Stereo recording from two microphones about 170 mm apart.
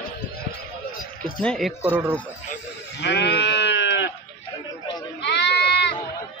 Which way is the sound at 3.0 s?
80° left.